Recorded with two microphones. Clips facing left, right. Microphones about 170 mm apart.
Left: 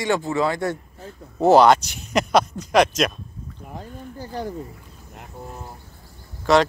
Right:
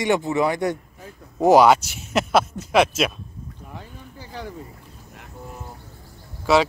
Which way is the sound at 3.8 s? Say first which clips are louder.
Left 9 dB; 45° left (ahead or behind).